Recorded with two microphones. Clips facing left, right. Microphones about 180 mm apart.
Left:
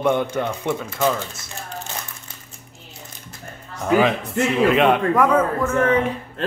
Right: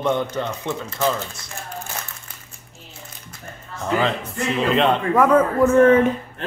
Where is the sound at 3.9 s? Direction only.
10° left (ahead or behind).